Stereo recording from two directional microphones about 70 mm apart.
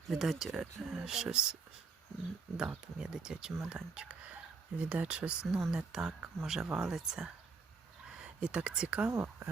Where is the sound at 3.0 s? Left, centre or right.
Centre.